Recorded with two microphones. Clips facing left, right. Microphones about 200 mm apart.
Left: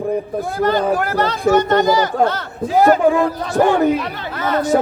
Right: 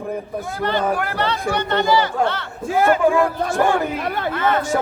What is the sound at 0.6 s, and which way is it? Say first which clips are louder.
Speech: left 4 dB; 40° left (ahead or behind).